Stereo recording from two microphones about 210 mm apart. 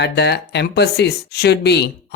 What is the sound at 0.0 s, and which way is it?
Speech, 50° left (ahead or behind).